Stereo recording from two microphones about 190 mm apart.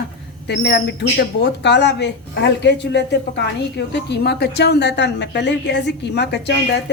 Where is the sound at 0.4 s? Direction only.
65° left (ahead or behind).